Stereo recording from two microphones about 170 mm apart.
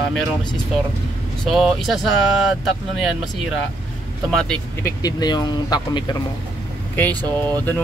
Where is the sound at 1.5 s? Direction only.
Centre (ahead or behind).